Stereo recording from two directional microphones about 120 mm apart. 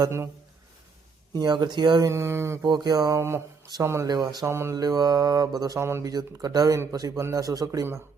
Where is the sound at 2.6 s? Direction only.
35° right (ahead or behind).